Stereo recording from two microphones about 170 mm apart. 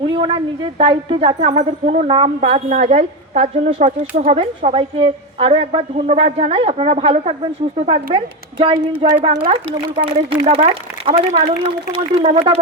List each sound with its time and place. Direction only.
0.0 s a woman's voice: 30° right (ahead or behind)
8.7 s speech: 25° right (ahead or behind)
9.2 s a woman's voice: 35° right (ahead or behind)